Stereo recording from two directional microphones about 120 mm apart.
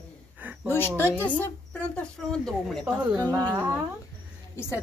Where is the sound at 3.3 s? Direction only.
30° right (ahead or behind).